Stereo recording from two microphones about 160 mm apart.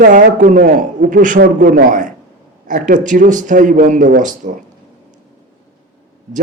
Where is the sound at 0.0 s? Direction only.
55° right (ahead or behind).